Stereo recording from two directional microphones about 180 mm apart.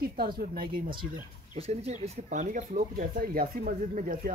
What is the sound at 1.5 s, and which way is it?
Speech, 35° right (ahead or behind).